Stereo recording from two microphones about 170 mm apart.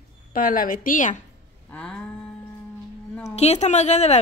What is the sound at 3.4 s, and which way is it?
Speech, 40° left (ahead or behind).